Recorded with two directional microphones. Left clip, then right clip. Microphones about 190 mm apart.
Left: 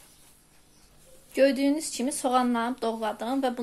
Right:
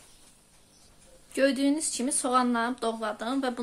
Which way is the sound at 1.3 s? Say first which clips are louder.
Left 3 dB; 5° left (ahead or behind).